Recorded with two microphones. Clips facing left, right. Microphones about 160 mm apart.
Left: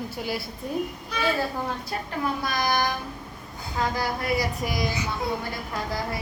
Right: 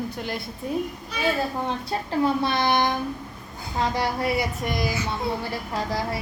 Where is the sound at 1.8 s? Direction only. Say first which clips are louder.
Right 5 dB; 30° right (ahead or behind).